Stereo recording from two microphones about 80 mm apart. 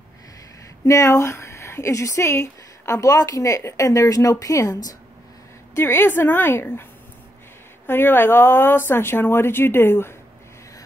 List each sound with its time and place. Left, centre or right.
0.8 s speech: left
5.8 s a woman's voice: left